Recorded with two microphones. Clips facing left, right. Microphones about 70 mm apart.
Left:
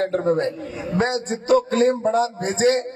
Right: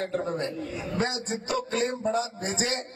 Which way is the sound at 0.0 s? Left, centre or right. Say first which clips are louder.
Left 9 dB; left.